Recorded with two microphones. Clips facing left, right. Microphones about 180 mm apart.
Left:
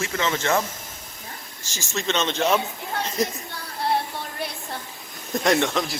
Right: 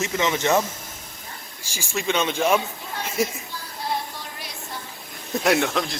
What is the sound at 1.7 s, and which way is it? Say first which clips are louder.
Speech: right 1 dB; 10° right (ahead or behind).